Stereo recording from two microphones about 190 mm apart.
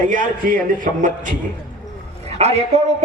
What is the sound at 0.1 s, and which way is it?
A man's voice, 45° right (ahead or behind).